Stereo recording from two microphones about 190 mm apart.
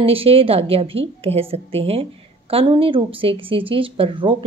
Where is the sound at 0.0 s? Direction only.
30° right (ahead or behind).